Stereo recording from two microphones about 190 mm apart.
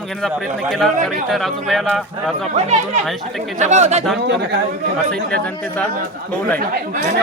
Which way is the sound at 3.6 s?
40° right (ahead or behind).